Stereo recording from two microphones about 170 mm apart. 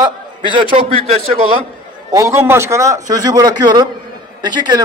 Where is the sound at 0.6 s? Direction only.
30° right (ahead or behind).